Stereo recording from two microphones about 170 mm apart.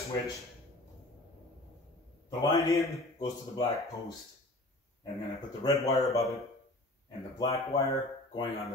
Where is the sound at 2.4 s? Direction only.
20° left (ahead or behind).